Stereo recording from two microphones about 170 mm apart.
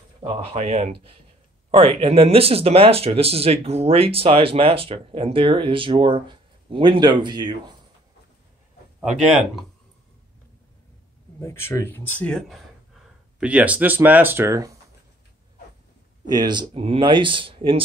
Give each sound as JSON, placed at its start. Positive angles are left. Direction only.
{"t": 0.2, "sound": "speech", "side_deg": -30}
{"t": 11.3, "sound": "speech", "side_deg": 15}
{"t": 16.3, "sound": "speech", "side_deg": -25}